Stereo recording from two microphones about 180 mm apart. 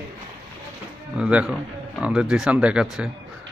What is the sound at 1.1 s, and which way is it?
Speech, 5° right (ahead or behind).